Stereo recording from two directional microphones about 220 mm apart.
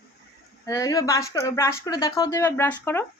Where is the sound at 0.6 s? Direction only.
15° left (ahead or behind).